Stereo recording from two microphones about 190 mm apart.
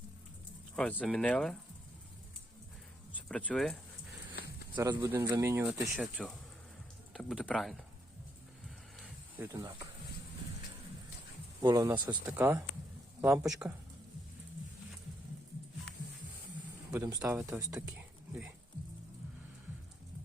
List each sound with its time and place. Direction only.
0.8 s speech: 5° left (ahead or behind)
3.2 s speech: 5° left (ahead or behind)
4.7 s speech: 20° right (ahead or behind)
4.9 s speech: 10° right (ahead or behind)
5.9 s speech: centre (ahead or behind)
9.4 s speech: 15° right (ahead or behind)
11.6 s speech: 20° right (ahead or behind)
16.9 s speech: 20° right (ahead or behind)